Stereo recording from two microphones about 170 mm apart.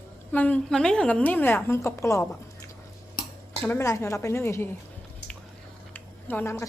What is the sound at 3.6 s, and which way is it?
A woman's voice, 15° left (ahead or behind).